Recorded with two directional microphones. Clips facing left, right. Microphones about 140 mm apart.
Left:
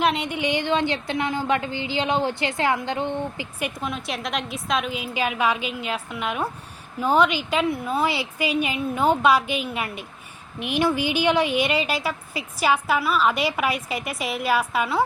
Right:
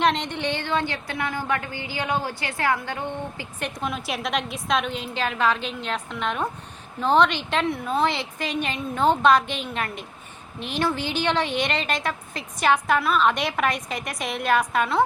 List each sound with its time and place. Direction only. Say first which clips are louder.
0.0 s a woman's voice: even; 5° left (ahead or behind)
3.6 s a woman's voice: even; centre (ahead or behind)